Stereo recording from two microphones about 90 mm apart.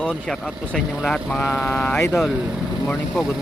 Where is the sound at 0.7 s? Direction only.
5° left (ahead or behind).